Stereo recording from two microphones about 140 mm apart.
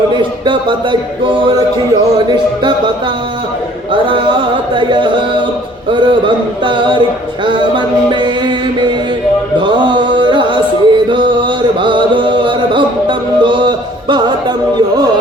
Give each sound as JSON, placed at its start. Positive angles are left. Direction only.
{"t": 0.1, "sound": "music", "side_deg": -35}
{"t": 4.0, "sound": "music", "side_deg": -35}
{"t": 8.1, "sound": "music", "side_deg": -35}